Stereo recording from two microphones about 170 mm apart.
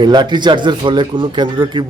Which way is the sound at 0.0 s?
25° right (ahead or behind).